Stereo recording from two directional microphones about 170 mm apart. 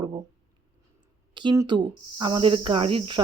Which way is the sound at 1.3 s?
25° right (ahead or behind).